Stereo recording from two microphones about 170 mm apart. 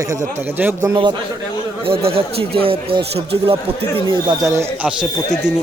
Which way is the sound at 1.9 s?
35° right (ahead or behind).